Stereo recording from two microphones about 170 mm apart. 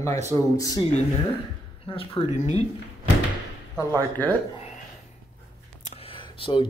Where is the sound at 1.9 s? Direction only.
35° left (ahead or behind).